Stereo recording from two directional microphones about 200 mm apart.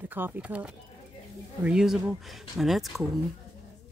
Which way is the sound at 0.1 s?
10° right (ahead or behind).